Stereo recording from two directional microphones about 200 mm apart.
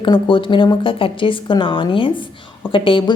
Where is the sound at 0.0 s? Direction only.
25° left (ahead or behind).